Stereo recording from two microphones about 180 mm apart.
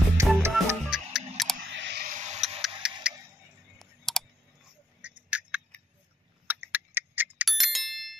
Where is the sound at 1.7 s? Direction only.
75° right (ahead or behind).